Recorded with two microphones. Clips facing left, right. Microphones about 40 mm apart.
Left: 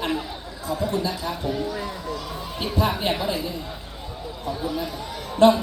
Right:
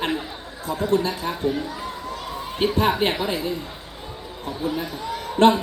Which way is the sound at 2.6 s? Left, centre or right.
Right.